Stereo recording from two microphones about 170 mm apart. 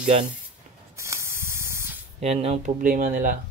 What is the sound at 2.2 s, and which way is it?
Speech, 40° right (ahead or behind).